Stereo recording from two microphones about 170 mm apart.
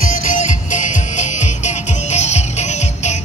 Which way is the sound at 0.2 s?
50° left (ahead or behind).